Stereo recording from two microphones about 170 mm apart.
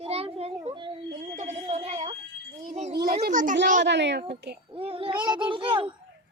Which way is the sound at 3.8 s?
90° right.